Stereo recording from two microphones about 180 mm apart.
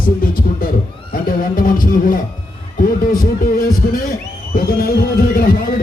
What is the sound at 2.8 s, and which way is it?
Speech, 50° left (ahead or behind).